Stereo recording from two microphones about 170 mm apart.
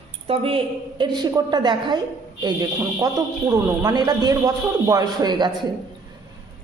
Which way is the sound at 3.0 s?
20° right (ahead or behind).